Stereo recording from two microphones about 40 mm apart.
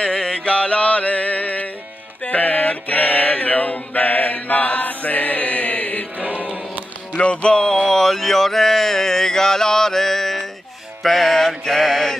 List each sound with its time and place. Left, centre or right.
0.0 s music: centre
0.4 s music: left
2.2 s mantra: left
4.8 s chant: left
7.2 s music: left
7.9 s a sound: centre
11.0 s mantra: centre